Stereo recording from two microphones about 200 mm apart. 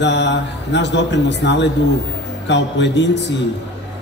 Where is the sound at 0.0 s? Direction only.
60° left (ahead or behind).